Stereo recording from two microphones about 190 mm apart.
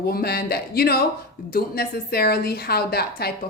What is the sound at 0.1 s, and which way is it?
A woman's voice, 55° left (ahead or behind).